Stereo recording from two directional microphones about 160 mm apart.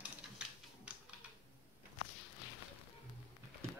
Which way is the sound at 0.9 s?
10° right (ahead or behind).